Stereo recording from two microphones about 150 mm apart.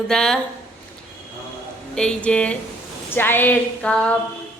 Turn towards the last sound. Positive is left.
turn(degrees=5)  # may be behind; listen again after turning